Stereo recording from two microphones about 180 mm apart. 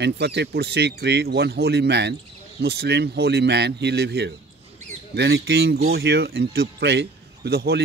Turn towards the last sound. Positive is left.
turn(degrees=-60)  # may be behind; listen again after turning